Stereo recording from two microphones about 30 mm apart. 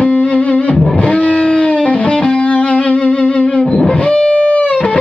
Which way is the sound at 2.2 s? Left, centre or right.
Left.